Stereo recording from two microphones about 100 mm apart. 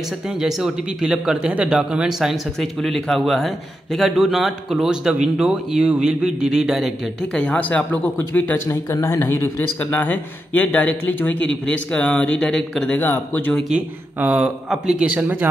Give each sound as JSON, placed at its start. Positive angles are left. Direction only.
{"t": 0.4, "sound": "speech", "side_deg": -5}
{"t": 7.3, "sound": "speech", "side_deg": 10}
{"t": 13.0, "sound": "speech", "side_deg": 20}
{"t": 13.7, "sound": "speech", "side_deg": -10}